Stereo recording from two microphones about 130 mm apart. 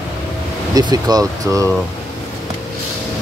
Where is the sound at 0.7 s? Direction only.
30° right (ahead or behind).